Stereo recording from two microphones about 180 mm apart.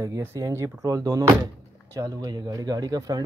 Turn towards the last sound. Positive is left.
turn(degrees=-20)  # may be behind; listen again after turning